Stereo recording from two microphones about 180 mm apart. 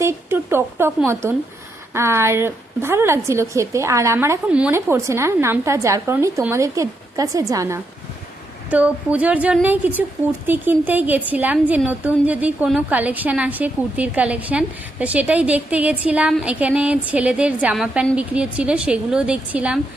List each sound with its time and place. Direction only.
0.0 s a woman's voice: 15° right (ahead or behind)